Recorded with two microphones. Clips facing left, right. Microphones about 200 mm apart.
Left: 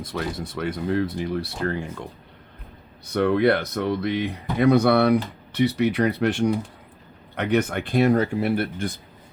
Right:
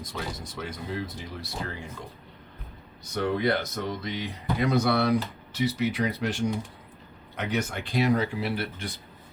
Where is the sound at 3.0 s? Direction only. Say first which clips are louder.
Left 7 dB; 60° left (ahead or behind).